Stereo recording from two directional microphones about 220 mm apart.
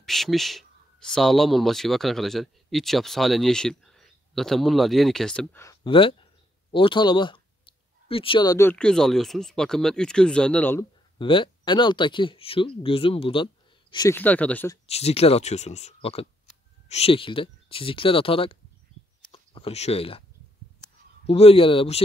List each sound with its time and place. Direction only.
0.0 s speech: centre (ahead or behind)
5.9 s speech: 25° left (ahead or behind)
11.1 s speech: 25° left (ahead or behind)
14.9 s speech: 30° left (ahead or behind)
21.3 s speech: 25° left (ahead or behind)